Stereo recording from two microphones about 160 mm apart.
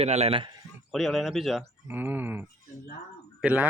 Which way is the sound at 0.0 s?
40° right (ahead or behind).